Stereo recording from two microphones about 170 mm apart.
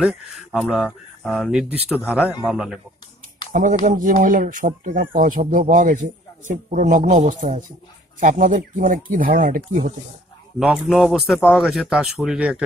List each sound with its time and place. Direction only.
0.0 s speech: centre (ahead or behind)
3.5 s a man's voice: 50° right (ahead or behind)
10.6 s speech: 5° right (ahead or behind)